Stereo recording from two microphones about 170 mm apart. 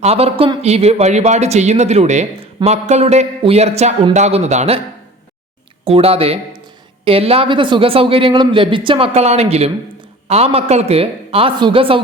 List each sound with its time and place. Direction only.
0.0 s speech: 35° right (ahead or behind)
5.8 s speech: 35° right (ahead or behind)